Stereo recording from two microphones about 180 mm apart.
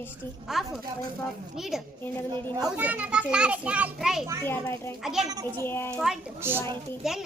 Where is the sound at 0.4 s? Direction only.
Centre (ahead or behind).